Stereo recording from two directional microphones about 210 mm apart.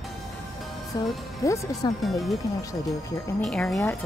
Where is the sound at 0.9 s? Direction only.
20° left (ahead or behind).